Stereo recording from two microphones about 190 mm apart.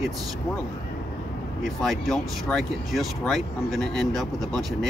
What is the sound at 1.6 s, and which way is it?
Speech, centre (ahead or behind).